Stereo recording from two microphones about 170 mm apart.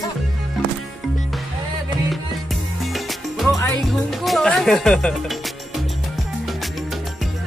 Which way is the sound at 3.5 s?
15° left (ahead or behind).